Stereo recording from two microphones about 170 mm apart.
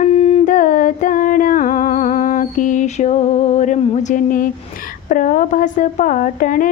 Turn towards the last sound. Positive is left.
turn(degrees=55)  # may be behind; listen again after turning